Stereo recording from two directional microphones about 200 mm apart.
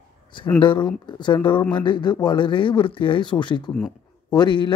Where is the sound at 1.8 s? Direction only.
25° left (ahead or behind).